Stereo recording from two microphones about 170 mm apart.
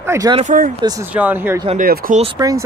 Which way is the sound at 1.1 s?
10° right (ahead or behind).